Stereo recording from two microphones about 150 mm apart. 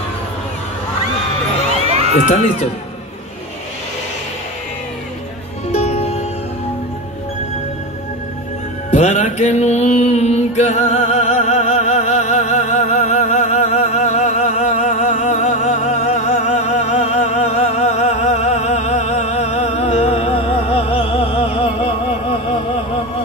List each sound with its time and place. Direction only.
2.2 s speech: 50° left (ahead or behind)
5.7 s music: 45° left (ahead or behind)
8.9 s music: 50° left (ahead or behind)